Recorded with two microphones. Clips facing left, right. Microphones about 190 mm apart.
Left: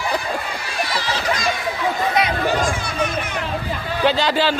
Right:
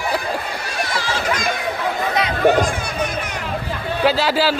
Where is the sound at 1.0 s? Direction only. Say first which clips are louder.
Right 1 dB; 50° right (ahead or behind).